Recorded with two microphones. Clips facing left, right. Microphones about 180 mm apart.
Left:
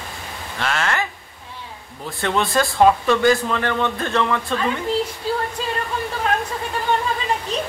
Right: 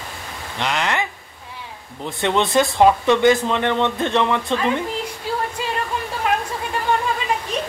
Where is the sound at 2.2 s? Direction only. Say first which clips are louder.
Right 2 dB; 20° right (ahead or behind).